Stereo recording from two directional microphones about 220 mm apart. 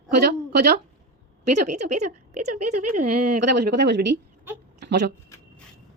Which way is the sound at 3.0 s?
90° right.